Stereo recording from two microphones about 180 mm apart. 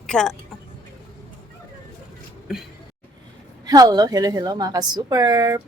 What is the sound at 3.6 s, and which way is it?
Speech, 20° right (ahead or behind).